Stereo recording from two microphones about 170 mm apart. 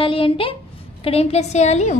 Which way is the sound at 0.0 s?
30° left (ahead or behind).